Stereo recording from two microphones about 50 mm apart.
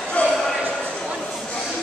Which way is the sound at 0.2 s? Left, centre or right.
Left.